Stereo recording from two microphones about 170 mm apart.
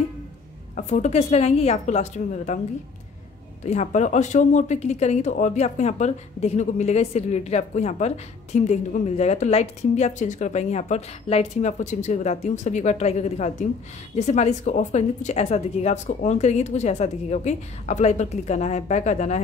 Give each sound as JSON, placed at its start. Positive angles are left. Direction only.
{"t": 0.7, "sound": "a woman's voice", "side_deg": 45}
{"t": 3.6, "sound": "a woman's voice", "side_deg": 45}